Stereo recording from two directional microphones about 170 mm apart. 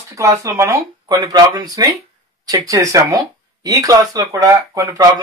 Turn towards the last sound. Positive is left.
turn(degrees=-20)  # may be behind; listen again after turning